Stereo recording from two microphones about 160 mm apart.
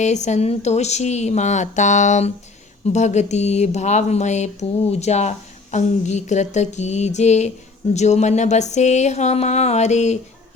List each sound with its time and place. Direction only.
0.0 s speech: 45° left (ahead or behind)